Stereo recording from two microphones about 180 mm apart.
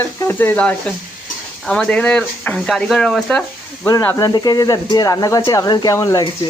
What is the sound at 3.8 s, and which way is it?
Speech, 15° left (ahead or behind).